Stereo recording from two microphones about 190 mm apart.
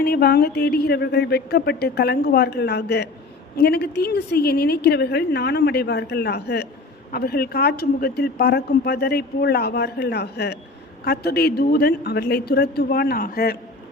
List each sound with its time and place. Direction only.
0.0 s a woman's voice: 55° left (ahead or behind)